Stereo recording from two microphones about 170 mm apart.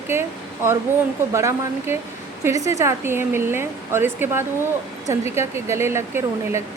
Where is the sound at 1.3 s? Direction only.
15° right (ahead or behind).